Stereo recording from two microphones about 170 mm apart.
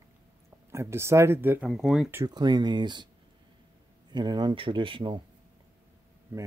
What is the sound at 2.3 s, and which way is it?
Speech, 25° right (ahead or behind).